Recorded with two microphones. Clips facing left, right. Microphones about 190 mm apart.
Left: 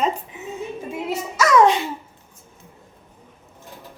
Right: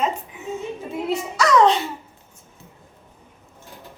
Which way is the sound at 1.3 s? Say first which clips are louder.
Left 1 dB; 10° left (ahead or behind).